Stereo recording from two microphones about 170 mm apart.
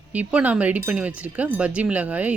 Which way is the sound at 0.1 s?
10° right (ahead or behind).